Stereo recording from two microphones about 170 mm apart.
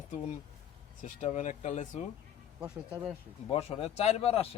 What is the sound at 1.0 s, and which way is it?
Speech, 45° left (ahead or behind).